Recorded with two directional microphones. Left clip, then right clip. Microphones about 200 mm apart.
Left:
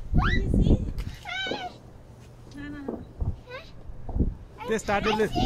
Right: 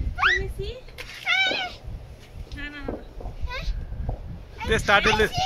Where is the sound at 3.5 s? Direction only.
45° left (ahead or behind).